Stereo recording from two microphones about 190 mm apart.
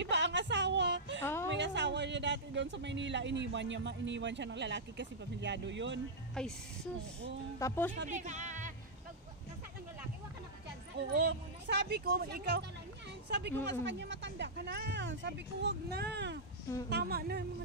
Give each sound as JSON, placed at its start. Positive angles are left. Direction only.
{"t": 0.0, "sound": "a sound", "side_deg": -70}
{"t": 1.2, "sound": "a sound", "side_deg": 15}
{"t": 1.5, "sound": "speech", "side_deg": -70}
{"t": 6.3, "sound": "a woman's voice", "side_deg": 5}
{"t": 7.5, "sound": "speech", "side_deg": 15}
{"t": 8.1, "sound": "speech", "side_deg": -40}
{"t": 11.0, "sound": "speech", "side_deg": -60}